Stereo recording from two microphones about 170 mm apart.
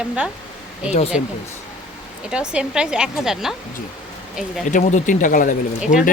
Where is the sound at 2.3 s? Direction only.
5° right (ahead or behind).